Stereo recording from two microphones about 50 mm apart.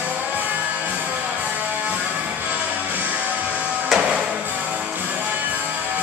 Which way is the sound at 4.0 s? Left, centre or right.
Centre.